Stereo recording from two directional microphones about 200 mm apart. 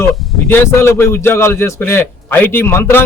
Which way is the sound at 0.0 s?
10° left (ahead or behind).